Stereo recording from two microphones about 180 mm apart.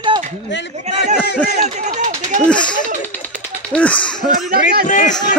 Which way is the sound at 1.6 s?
40° right (ahead or behind).